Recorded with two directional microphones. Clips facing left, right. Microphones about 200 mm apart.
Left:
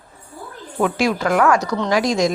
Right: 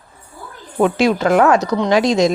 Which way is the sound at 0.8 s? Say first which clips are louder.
Right 4 dB; 25° right (ahead or behind).